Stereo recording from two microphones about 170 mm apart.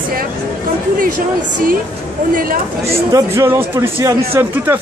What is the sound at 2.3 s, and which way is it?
Speech, 55° right (ahead or behind).